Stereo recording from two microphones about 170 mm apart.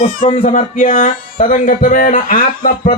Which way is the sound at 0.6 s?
50° left (ahead or behind).